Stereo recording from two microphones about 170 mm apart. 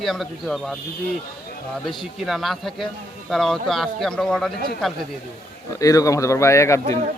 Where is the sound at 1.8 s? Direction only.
Centre (ahead or behind).